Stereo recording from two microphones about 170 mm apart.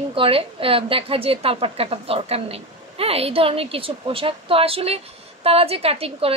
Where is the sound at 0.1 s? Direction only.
30° right (ahead or behind).